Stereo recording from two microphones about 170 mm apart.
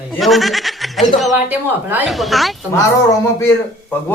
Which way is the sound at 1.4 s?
10° right (ahead or behind).